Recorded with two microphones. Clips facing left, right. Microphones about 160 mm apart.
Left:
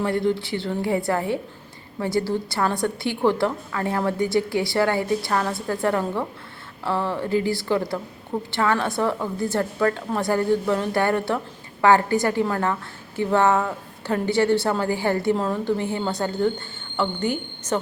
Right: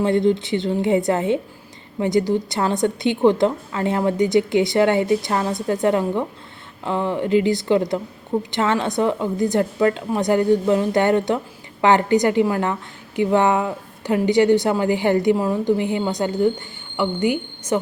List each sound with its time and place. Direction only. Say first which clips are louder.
0.0 s a woman's voice: right 5 dB; 20° right (ahead or behind)